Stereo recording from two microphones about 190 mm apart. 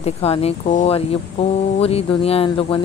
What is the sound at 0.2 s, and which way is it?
Speech, 30° left (ahead or behind).